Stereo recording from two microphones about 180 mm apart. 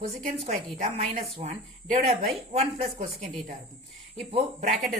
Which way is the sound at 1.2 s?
35° right (ahead or behind).